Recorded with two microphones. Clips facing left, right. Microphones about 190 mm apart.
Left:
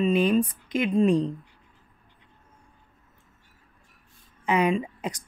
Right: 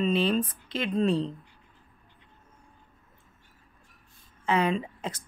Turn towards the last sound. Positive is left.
turn(degrees=15)  # may be behind; listen again after turning